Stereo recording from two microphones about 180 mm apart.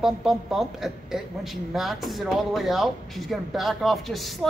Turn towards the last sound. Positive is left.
turn(degrees=0)  # may be behind; listen again after turning